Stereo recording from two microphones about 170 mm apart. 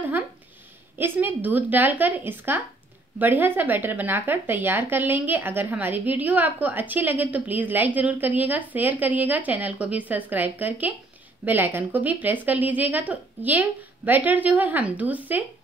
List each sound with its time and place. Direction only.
0.9 s a woman's voice: 10° right (ahead or behind)